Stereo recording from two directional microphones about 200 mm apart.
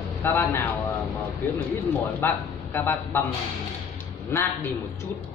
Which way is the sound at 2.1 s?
10° left (ahead or behind).